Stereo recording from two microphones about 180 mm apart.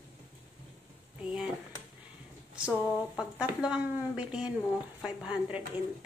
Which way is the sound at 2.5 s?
5° right (ahead or behind).